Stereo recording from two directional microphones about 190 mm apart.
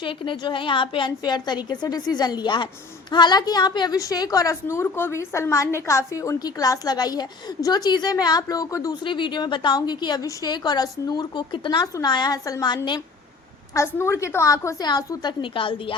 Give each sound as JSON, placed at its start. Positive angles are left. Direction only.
{"t": 0.0, "sound": "a woman's voice", "side_deg": 25}